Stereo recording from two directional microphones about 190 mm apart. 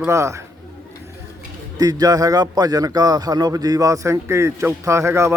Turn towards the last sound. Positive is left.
turn(degrees=-15)  # may be behind; listen again after turning